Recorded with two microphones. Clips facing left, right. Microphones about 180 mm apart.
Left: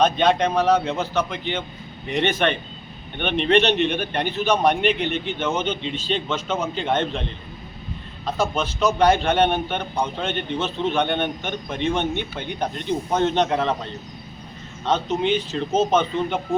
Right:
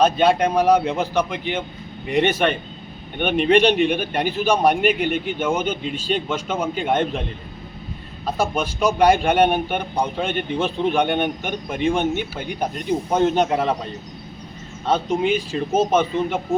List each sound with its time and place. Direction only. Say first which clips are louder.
0.0 s a man's voice: right 2 dB; 10° right (ahead or behind)
8.4 s a man's voice: right 1 dB; 10° right (ahead or behind)
14.8 s a man's voice: right 2 dB; 10° right (ahead or behind)